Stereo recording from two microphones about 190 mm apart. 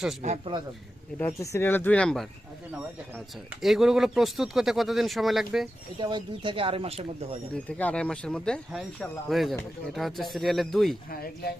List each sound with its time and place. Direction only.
0.2 s speech: 35° right (ahead or behind)
1.2 s speech: 15° left (ahead or behind)
6.0 s speech: 25° right (ahead or behind)
7.5 s speech: 5° left (ahead or behind)
11.1 s speech: 50° left (ahead or behind)